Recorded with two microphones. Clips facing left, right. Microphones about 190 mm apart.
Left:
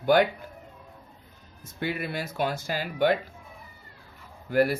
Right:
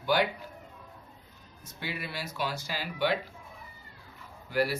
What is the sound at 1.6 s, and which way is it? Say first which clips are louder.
Speech: left 7 dB; 55° left (ahead or behind).